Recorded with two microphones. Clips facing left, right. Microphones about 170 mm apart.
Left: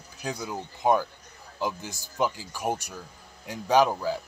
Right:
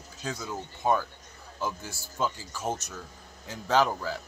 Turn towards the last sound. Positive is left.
turn(degrees=15)  # may be behind; listen again after turning